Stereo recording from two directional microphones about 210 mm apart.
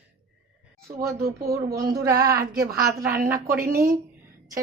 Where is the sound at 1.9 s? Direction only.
50° right (ahead or behind).